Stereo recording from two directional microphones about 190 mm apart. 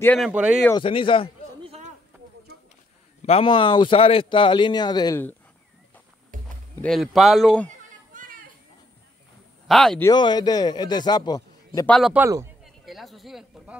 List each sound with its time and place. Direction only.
0.0 s speech: 5° left (ahead or behind)
0.3 s speech: 5° right (ahead or behind)
0.7 s speech: 25° left (ahead or behind)
1.6 s a sound: 30° right (ahead or behind)
3.3 s speech: 30° left (ahead or behind)
6.3 s a sound: 45° right (ahead or behind)
6.7 s speech: 5° left (ahead or behind)
8.1 s a sound: 45° right (ahead or behind)
9.7 s speech: centre (ahead or behind)
10.0 s speech: 25° left (ahead or behind)
11.8 s speech: 5° left (ahead or behind)
12.1 s speech: 15° right (ahead or behind)
12.6 s a sound: centre (ahead or behind)